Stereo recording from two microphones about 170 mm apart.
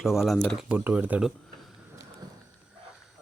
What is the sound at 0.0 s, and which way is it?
Speech, centre (ahead or behind).